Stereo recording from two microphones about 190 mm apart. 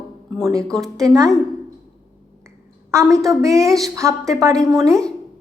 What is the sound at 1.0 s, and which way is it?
Speech, 20° right (ahead or behind).